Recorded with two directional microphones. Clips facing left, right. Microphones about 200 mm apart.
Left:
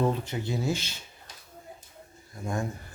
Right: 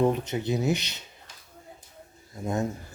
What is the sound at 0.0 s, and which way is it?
Speech, 20° right (ahead or behind).